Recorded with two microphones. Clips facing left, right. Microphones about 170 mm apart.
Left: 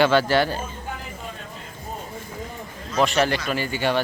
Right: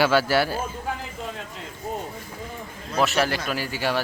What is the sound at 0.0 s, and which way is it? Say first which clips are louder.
Speech: left 2 dB; 5° right (ahead or behind).